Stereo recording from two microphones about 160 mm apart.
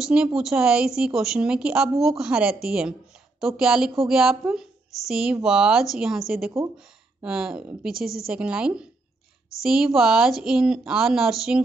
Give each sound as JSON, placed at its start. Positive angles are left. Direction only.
{"t": 0.0, "sound": "a woman's voice", "side_deg": -5}